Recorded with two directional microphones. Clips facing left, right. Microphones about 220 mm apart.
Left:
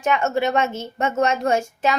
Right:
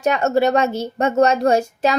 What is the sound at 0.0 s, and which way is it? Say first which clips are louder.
A woman's voice: right 4 dB; 35° right (ahead or behind).